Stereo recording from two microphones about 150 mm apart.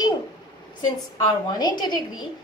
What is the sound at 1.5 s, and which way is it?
Speech, 25° left (ahead or behind).